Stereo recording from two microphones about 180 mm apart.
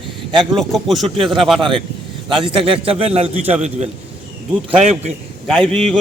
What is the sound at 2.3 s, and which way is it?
A man's voice, 30° right (ahead or behind).